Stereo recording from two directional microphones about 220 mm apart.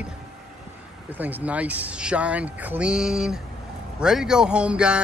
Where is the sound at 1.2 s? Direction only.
5° right (ahead or behind).